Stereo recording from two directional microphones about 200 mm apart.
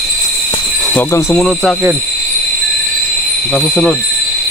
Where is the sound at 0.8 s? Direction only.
10° left (ahead or behind).